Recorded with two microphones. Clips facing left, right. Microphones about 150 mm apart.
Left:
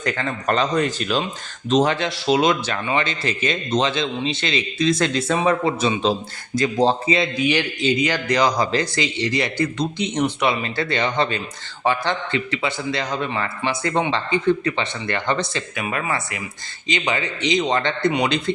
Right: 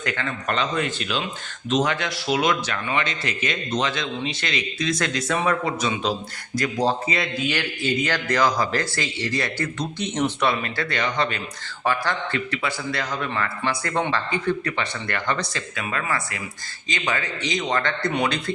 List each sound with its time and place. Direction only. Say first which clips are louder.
0.0 s speech: left 4 dB; 35° left (ahead or behind)
1.7 s speech: left 4 dB; 30° left (ahead or behind); by 10.6 s 15° left (ahead or behind)
10.6 s speech: left 3 dB; 25° left (ahead or behind)